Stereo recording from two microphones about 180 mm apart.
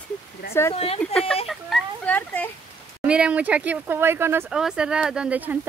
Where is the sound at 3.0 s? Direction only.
5° right (ahead or behind).